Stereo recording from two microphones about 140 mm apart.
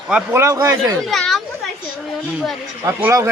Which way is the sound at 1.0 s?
Centre (ahead or behind).